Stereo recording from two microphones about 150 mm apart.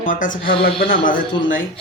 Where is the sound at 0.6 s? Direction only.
75° left (ahead or behind).